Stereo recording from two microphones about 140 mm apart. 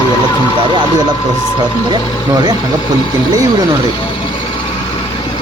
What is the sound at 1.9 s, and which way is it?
Speech, 30° right (ahead or behind).